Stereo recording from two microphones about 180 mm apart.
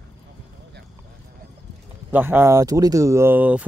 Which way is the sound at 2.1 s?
10° right (ahead or behind).